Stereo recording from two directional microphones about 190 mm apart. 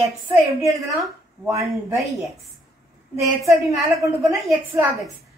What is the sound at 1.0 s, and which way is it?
Speech, centre (ahead or behind).